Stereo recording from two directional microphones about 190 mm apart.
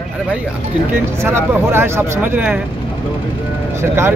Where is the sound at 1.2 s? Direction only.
10° right (ahead or behind).